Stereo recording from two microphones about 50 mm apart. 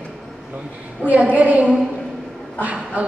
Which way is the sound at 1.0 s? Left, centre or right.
Right.